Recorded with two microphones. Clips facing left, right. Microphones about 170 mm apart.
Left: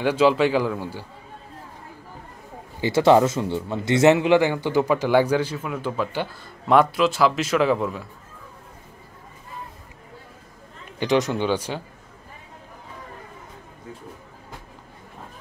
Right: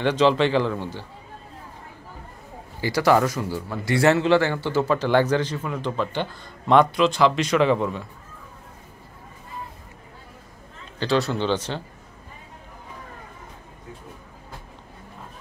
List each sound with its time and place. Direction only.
0.0 s speech: 10° left (ahead or behind)
2.8 s a man's voice: 25° left (ahead or behind); by 8.1 s 5° left (ahead or behind)
11.0 s speech: 15° left (ahead or behind)